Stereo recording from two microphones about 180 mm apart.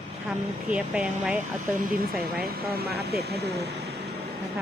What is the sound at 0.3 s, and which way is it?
Speech, 5° right (ahead or behind).